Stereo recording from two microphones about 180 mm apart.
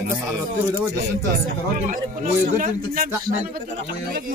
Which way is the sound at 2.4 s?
50° right (ahead or behind).